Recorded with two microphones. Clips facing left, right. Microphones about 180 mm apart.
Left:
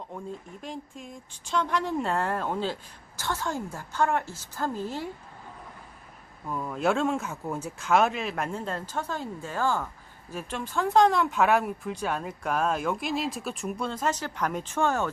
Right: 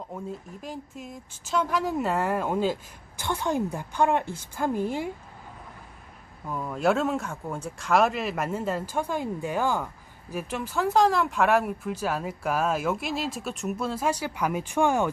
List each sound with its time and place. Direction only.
0.1 s a woman's voice: 5° right (ahead or behind)
6.5 s speech: centre (ahead or behind)